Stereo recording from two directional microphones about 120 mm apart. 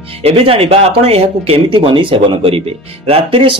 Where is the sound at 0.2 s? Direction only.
50° right (ahead or behind).